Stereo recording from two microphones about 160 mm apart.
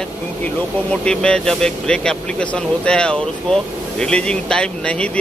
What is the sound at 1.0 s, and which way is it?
Speech, 5° left (ahead or behind).